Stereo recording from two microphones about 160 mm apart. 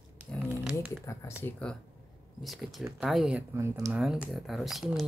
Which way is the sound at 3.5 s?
15° right (ahead or behind).